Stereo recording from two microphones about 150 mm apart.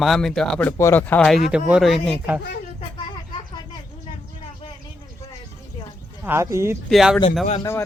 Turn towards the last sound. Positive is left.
turn(degrees=20)  # may be behind; listen again after turning